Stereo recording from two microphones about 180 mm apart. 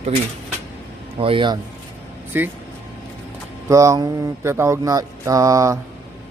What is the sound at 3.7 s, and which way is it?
Mantra, 20° right (ahead or behind).